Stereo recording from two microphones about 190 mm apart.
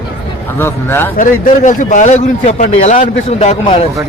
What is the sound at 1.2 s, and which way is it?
A man's voice, 45° left (ahead or behind).